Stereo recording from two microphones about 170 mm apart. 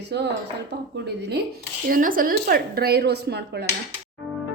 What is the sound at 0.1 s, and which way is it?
Speech, 90° right.